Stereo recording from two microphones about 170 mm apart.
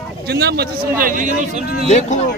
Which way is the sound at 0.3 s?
75° right (ahead or behind).